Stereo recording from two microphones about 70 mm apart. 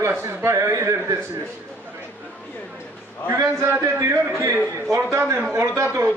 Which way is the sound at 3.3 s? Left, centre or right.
Right.